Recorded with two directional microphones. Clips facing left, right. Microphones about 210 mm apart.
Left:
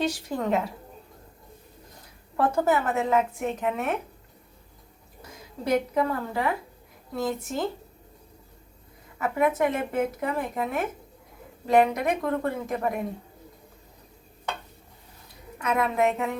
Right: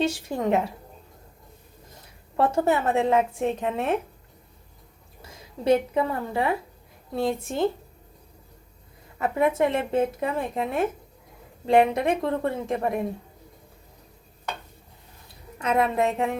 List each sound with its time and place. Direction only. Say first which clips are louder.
0.0 s a woman's voice: right 2 dB; 25° right (ahead or behind)
2.3 s a woman's voice: right 1 dB; 25° right (ahead or behind)
5.6 s a woman's voice: right 3 dB; 25° right (ahead or behind)
9.1 s a woman's voice: right 1 dB; 30° right (ahead or behind)
15.6 s a woman's voice: right 1 dB; 30° right (ahead or behind)